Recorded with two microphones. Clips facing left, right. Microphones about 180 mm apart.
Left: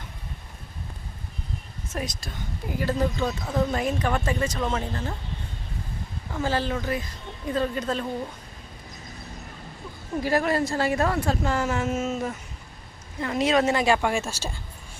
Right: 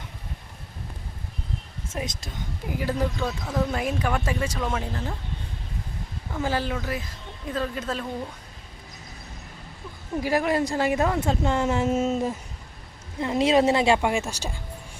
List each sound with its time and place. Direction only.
2.0 s a woman's voice: 20° right (ahead or behind)
3.2 s speech: centre (ahead or behind)
6.4 s speech: 10° right (ahead or behind)
10.2 s a woman's voice: 15° right (ahead or behind)